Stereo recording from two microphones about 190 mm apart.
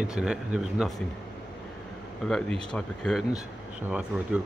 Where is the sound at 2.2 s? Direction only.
5° left (ahead or behind).